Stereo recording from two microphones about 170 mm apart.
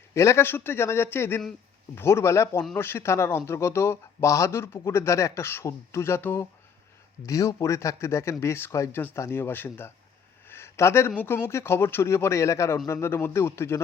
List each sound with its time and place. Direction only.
0.1 s speech: 15° left (ahead or behind)